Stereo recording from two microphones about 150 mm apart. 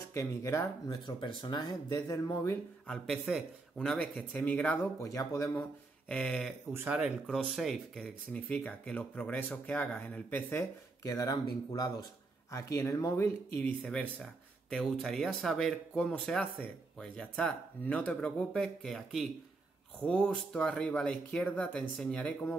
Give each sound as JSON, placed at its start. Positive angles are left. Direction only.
{"t": 0.1, "sound": "speech", "side_deg": 20}
{"t": 2.9, "sound": "speech", "side_deg": -5}
{"t": 5.6, "sound": "a sound", "side_deg": 5}
{"t": 6.7, "sound": "speech", "side_deg": -10}
{"t": 13.6, "sound": "speech", "side_deg": 10}